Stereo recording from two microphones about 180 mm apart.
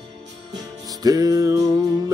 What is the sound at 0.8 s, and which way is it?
Speech, 20° right (ahead or behind).